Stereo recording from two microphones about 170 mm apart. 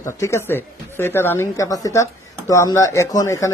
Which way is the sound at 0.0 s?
15° left (ahead or behind).